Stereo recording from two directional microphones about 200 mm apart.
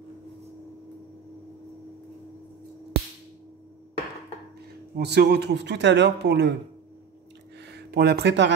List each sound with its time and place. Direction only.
4.9 s speech: 55° right (ahead or behind)
7.7 s speech: 50° right (ahead or behind)